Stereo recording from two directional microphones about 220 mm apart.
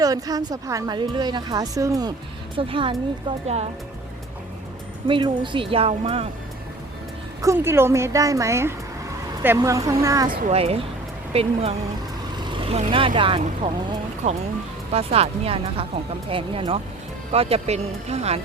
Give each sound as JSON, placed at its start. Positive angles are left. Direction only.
{"t": 0.0, "sound": "speech", "side_deg": -15}
{"t": 5.0, "sound": "speech", "side_deg": -20}
{"t": 7.4, "sound": "speech", "side_deg": -10}
{"t": 10.2, "sound": "speech", "side_deg": -30}
{"t": 14.2, "sound": "speech", "side_deg": -35}